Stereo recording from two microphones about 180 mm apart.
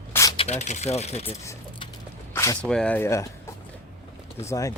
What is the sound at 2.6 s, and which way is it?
Speech, 5° left (ahead or behind).